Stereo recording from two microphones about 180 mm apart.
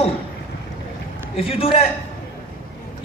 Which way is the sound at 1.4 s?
30° left (ahead or behind).